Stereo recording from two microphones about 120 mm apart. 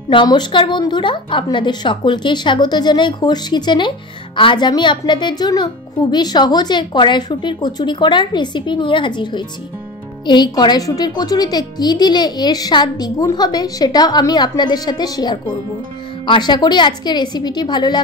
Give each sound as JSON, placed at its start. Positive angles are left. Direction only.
{"t": 0.1, "sound": "speech", "side_deg": 40}